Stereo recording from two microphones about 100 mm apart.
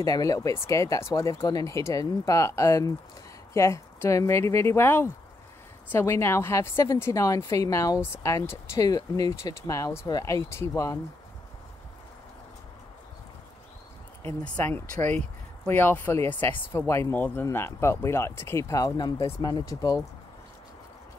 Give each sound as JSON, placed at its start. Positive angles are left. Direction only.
{"t": 0.0, "sound": "a woman's voice", "side_deg": 35}
{"t": 14.4, "sound": "a woman's voice", "side_deg": 15}